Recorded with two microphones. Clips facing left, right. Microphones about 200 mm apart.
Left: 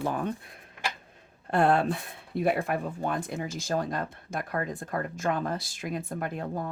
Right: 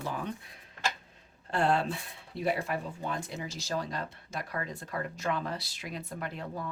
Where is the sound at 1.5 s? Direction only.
55° left (ahead or behind).